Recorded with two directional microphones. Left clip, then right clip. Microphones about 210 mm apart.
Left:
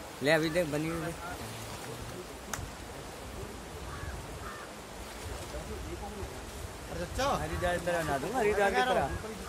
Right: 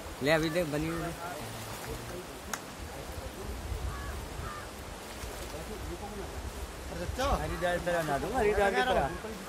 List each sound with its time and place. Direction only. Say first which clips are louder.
0.2 s speech: left 1 dB; centre (ahead or behind)
7.2 s speech: left 1 dB; 20° left (ahead or behind)
7.6 s speech: right 1 dB; centre (ahead or behind)